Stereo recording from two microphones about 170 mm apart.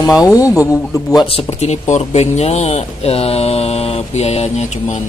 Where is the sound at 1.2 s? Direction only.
35° left (ahead or behind).